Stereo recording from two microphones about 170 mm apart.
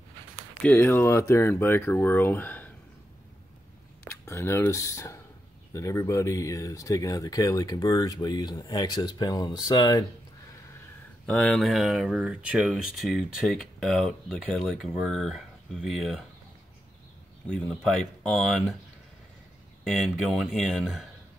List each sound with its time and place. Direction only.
0.6 s speech: 10° left (ahead or behind)
4.1 s speech: 15° left (ahead or behind)
11.2 s speech: 5° left (ahead or behind)
17.5 s speech: 5° left (ahead or behind)
19.8 s speech: centre (ahead or behind)